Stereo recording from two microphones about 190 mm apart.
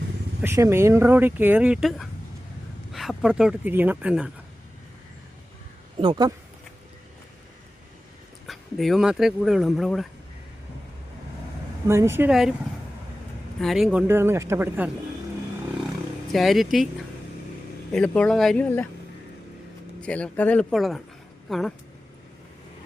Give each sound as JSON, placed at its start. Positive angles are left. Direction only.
{"t": 0.4, "sound": "speech", "side_deg": -15}
{"t": 6.0, "sound": "speech", "side_deg": -25}
{"t": 8.4, "sound": "speech", "side_deg": 0}
{"t": 11.9, "sound": "speech", "side_deg": -15}
{"t": 13.6, "sound": "speech", "side_deg": 0}
{"t": 14.1, "sound": "speech", "side_deg": -10}
{"t": 16.3, "sound": "speech", "side_deg": 0}
{"t": 17.9, "sound": "speech", "side_deg": 5}
{"t": 20.0, "sound": "speech", "side_deg": 5}